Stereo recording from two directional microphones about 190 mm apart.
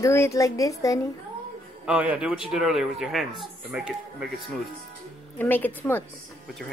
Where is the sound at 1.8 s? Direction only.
5° right (ahead or behind).